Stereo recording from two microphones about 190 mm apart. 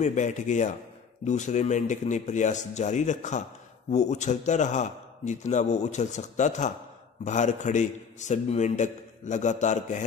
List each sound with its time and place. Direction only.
0.0 s a man's voice: 40° left (ahead or behind)